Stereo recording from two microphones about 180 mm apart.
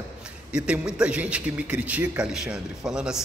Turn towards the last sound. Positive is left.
turn(degrees=-5)  # may be behind; listen again after turning